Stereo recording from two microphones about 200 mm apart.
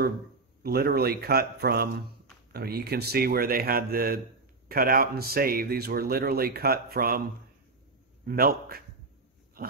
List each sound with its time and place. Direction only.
0.6 s speech: 50° right (ahead or behind)
8.3 s speech: 50° right (ahead or behind)